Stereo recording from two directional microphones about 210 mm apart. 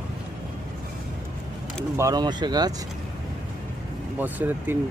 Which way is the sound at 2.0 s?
20° right (ahead or behind).